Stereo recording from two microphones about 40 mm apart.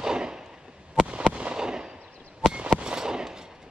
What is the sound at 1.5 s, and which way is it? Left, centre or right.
Fireworks, centre.